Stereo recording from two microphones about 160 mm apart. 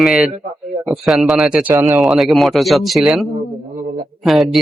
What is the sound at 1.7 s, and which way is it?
Speech, 15° right (ahead or behind).